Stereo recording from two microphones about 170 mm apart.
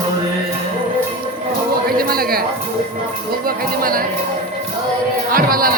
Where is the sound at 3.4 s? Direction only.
60° right (ahead or behind).